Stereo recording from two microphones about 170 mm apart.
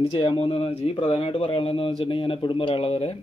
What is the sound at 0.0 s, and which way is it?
Speech, 30° left (ahead or behind).